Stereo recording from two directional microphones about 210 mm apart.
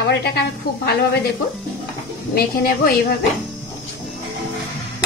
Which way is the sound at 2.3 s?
45° left (ahead or behind).